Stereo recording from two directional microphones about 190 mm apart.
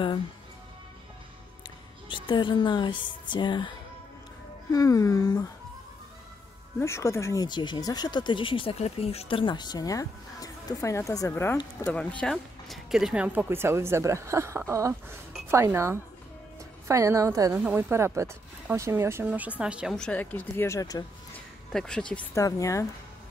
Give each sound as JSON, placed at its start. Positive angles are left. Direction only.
{"t": 2.0, "sound": "speech", "side_deg": 25}
{"t": 4.7, "sound": "speech", "side_deg": 15}
{"t": 6.8, "sound": "speech", "side_deg": 15}
{"t": 21.7, "sound": "speech", "side_deg": 5}
{"t": 22.4, "sound": "speech", "side_deg": 15}